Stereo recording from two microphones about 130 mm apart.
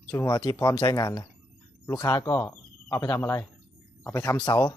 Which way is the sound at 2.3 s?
25° left (ahead or behind).